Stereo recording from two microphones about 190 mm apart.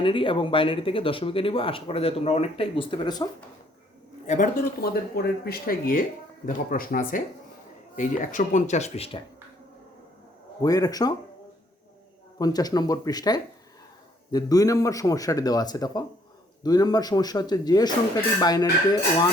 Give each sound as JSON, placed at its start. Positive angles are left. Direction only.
{"t": 0.0, "sound": "speech", "side_deg": 25}
{"t": 4.3, "sound": "speech", "side_deg": 45}
{"t": 10.6, "sound": "speech", "side_deg": 20}
{"t": 12.4, "sound": "speech", "side_deg": 20}